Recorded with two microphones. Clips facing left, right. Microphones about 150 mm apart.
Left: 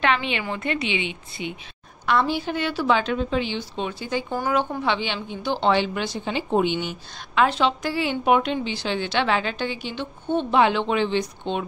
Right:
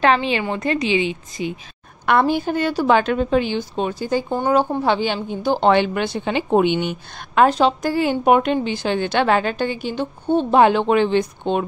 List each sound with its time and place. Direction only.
0.0 s a woman's voice: 35° right (ahead or behind)
2.0 s a woman's voice: 55° right (ahead or behind)
4.3 s a woman's voice: 30° right (ahead or behind); by 11.6 s 50° right (ahead or behind)